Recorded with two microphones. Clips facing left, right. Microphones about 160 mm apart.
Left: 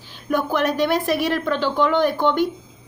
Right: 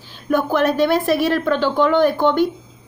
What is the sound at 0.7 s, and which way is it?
Speech, 15° left (ahead or behind).